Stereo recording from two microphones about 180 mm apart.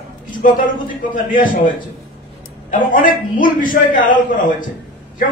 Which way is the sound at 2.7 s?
50° left (ahead or behind).